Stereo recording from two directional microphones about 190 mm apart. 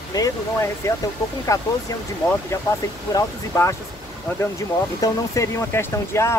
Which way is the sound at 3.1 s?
15° left (ahead or behind).